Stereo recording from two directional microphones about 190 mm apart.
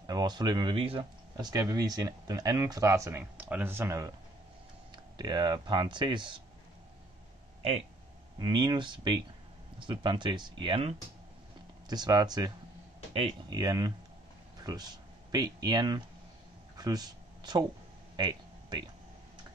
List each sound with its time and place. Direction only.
0.0 s speech: 20° right (ahead or behind)
8.4 s speech: 25° right (ahead or behind)
16.7 s a sound: 20° right (ahead or behind)